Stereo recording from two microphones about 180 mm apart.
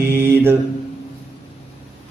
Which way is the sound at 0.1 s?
10° right (ahead or behind).